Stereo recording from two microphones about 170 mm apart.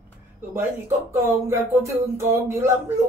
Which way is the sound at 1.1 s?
15° right (ahead or behind).